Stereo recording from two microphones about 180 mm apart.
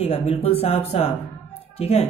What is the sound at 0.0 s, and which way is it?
Speech, 35° left (ahead or behind).